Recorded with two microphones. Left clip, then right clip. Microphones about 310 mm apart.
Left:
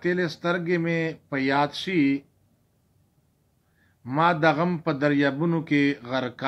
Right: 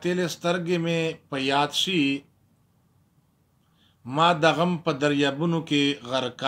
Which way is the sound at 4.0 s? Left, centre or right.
Centre.